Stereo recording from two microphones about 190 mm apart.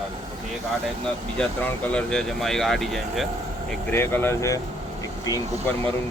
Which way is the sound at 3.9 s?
10° left (ahead or behind).